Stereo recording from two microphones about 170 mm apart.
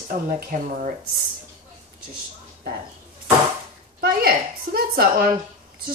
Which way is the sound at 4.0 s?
65° right (ahead or behind).